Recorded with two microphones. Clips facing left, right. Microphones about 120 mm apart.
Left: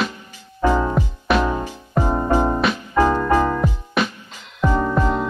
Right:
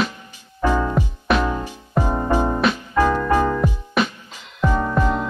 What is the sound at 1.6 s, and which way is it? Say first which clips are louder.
Music: left 1 dB; 15° left (ahead or behind).